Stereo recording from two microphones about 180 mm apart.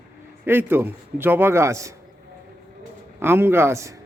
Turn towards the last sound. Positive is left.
turn(degrees=-15)  # may be behind; listen again after turning